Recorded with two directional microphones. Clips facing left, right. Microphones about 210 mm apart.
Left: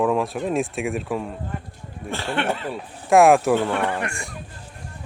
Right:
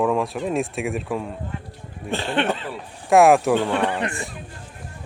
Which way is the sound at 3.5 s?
20° right (ahead or behind).